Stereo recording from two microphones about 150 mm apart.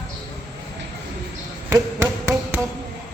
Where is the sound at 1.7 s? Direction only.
20° right (ahead or behind).